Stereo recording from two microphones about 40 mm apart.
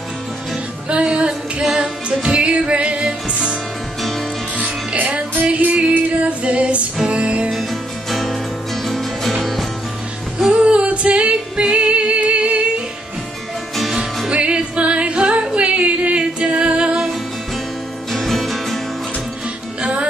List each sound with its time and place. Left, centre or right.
0.8 s music: right
1.6 s music: centre
2.2 s music: right
4.6 s music: right
6.2 s female singing: right
7.2 s music: right
8.1 s music: centre
10.5 s a sound: right
10.9 s female singing: right
11.7 s music: right
14.3 s music: right
18.1 s music: centre